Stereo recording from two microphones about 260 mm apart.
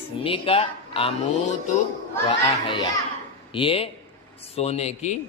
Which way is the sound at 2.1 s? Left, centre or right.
Centre.